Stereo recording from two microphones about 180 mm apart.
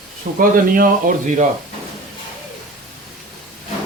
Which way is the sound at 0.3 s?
50° right (ahead or behind).